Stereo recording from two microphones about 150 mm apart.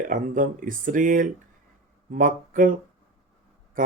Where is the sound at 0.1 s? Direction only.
65° right (ahead or behind).